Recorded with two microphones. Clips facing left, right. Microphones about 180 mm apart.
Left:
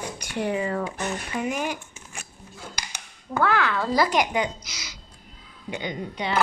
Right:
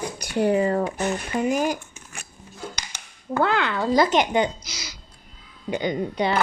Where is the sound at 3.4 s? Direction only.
20° right (ahead or behind); by 6.3 s 40° right (ahead or behind).